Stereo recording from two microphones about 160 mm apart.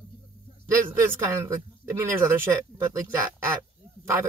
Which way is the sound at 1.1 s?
15° right (ahead or behind).